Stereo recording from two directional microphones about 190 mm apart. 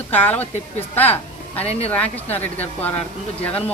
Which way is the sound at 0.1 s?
10° left (ahead or behind).